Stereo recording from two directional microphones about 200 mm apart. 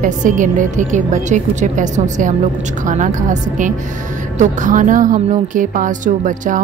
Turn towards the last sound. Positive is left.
turn(degrees=-40)  # may be behind; listen again after turning